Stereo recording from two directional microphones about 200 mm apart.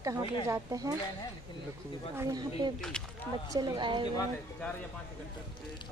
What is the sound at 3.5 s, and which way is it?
Speech, 20° right (ahead or behind).